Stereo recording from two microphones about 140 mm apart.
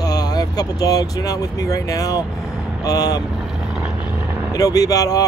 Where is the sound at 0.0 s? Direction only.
25° left (ahead or behind).